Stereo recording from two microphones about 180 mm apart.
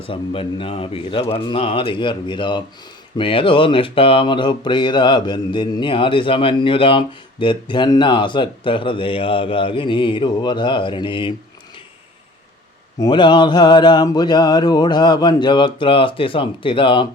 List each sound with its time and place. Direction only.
0.0 s speech: 30° left (ahead or behind)
13.0 s speech: 25° left (ahead or behind)